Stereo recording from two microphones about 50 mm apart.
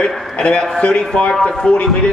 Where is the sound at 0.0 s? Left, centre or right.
Centre.